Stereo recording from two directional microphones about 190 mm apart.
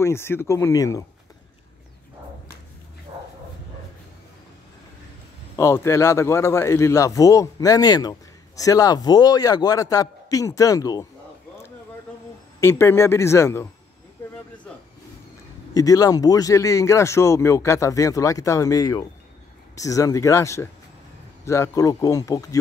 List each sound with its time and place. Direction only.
0.0 s a man's voice: 15° left (ahead or behind)
5.6 s a man's voice: 15° left (ahead or behind)
12.5 s a man's voice: 15° left (ahead or behind)
15.7 s a man's voice: 20° left (ahead or behind)